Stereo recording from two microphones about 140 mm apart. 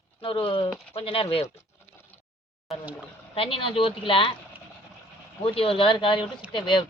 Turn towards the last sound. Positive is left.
turn(degrees=35)  # may be behind; listen again after turning